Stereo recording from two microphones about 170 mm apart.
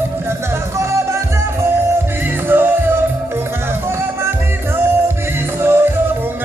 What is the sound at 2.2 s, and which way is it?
Music, 10° right (ahead or behind).